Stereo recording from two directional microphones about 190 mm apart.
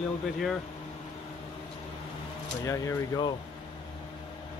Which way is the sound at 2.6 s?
15° left (ahead or behind).